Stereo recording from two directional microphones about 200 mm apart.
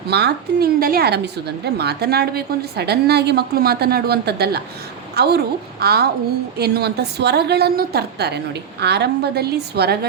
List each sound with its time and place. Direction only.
0.1 s a woman's voice: 55° right (ahead or behind)